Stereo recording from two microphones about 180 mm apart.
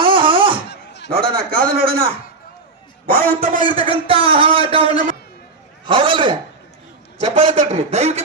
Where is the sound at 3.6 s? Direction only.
30° right (ahead or behind).